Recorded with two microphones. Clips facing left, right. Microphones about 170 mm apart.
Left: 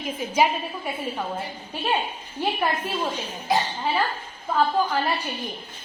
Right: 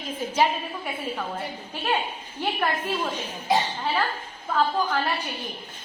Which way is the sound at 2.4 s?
10° left (ahead or behind).